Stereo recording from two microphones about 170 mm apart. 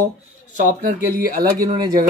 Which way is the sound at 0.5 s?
45° right (ahead or behind).